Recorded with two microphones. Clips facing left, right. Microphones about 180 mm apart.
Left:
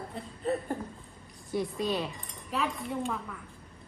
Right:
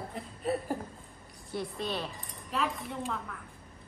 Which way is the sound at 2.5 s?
Centre (ahead or behind).